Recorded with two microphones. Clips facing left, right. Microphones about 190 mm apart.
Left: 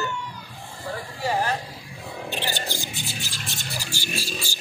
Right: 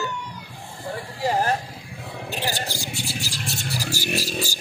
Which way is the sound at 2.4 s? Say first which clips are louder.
Right 4 dB; 35° right (ahead or behind).